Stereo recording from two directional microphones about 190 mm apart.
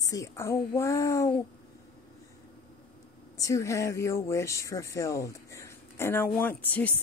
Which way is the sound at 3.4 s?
15° left (ahead or behind).